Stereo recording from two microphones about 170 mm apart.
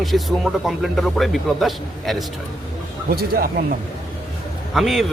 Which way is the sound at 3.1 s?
65° right (ahead or behind).